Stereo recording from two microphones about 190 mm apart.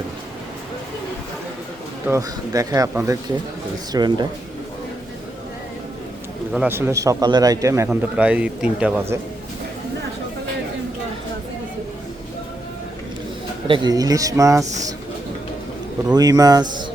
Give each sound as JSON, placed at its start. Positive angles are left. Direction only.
{"t": 2.0, "sound": "a man's voice", "side_deg": -15}
{"t": 6.5, "sound": "a man's voice", "side_deg": -10}
{"t": 7.9, "sound": "a man's voice", "side_deg": -5}
{"t": 13.7, "sound": "speech", "side_deg": -25}
{"t": 16.0, "sound": "speech", "side_deg": -20}